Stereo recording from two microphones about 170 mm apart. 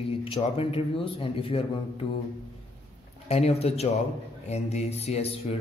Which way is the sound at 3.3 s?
40° left (ahead or behind).